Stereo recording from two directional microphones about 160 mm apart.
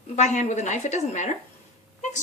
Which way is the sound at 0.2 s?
45° left (ahead or behind).